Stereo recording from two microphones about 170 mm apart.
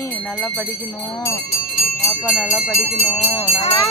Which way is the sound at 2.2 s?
5° right (ahead or behind).